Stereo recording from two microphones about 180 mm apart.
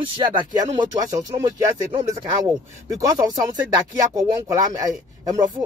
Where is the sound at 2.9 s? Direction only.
20° right (ahead or behind).